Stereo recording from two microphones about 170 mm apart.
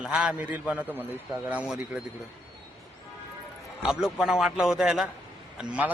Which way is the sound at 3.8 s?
5° right (ahead or behind).